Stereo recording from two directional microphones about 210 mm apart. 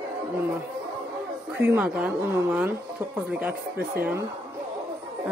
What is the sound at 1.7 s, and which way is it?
A woman's voice, 10° right (ahead or behind).